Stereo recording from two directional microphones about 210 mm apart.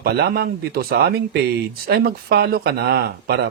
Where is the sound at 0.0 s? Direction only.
50° right (ahead or behind).